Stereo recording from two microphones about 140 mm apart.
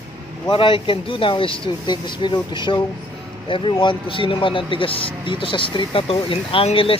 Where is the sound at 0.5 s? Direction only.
40° left (ahead or behind).